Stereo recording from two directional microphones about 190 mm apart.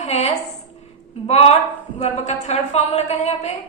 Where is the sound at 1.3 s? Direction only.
35° left (ahead or behind).